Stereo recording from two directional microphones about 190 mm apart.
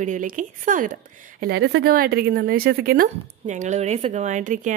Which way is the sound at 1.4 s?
60° right (ahead or behind).